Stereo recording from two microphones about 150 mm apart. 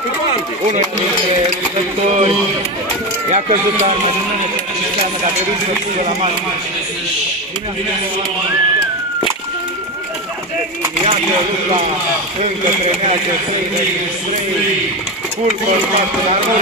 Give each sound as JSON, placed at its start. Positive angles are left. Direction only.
{"t": 0.7, "sound": "speech", "side_deg": -50}
{"t": 2.0, "sound": "speech", "side_deg": -45}